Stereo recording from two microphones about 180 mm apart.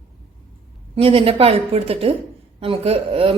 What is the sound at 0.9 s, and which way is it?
A woman's voice, 30° right (ahead or behind).